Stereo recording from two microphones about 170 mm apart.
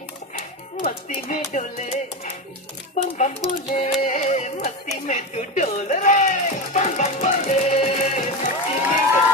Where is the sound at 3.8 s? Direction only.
50° left (ahead or behind).